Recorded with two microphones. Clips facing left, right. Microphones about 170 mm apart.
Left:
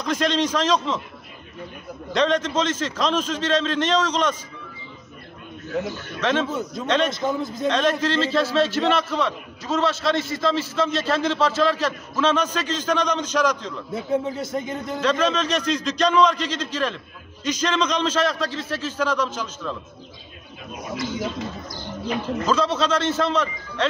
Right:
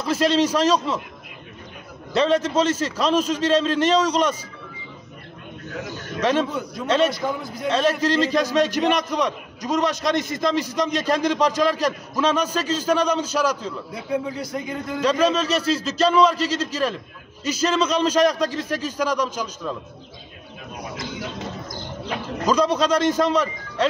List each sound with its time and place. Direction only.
0.0 s a man's voice: 5° right (ahead or behind)
2.1 s a man's voice: 10° right (ahead or behind)
5.9 s a man's voice: 10° right (ahead or behind)
7.1 s a man's voice: 20° left (ahead or behind)
7.6 s a man's voice: 10° right (ahead or behind)
13.9 s a man's voice: 25° left (ahead or behind)
15.0 s a man's voice: 10° right (ahead or behind)
22.5 s a man's voice: 15° right (ahead or behind)